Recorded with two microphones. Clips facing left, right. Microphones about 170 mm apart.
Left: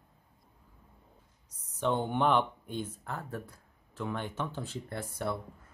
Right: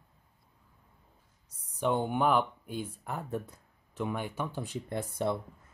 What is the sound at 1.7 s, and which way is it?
Speech, 10° right (ahead or behind).